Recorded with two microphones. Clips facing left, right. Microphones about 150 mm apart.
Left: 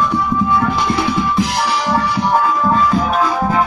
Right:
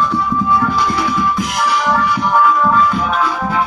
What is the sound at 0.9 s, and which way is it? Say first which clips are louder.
Music: left 1 dB; 30° left (ahead or behind).